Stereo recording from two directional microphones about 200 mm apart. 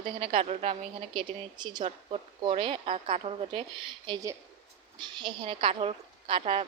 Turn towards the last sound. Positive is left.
turn(degrees=-30)  # may be behind; listen again after turning